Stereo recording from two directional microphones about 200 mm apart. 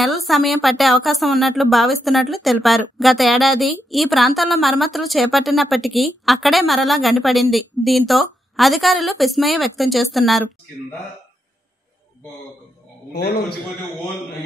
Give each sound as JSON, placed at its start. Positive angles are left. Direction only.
{"t": 0.0, "sound": "a woman's voice", "side_deg": 0}
{"t": 13.1, "sound": "a man's voice", "side_deg": 55}